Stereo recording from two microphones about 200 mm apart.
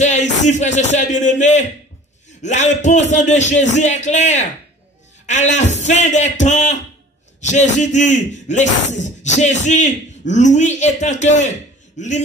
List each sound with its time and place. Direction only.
0.0 s speech: 35° left (ahead or behind)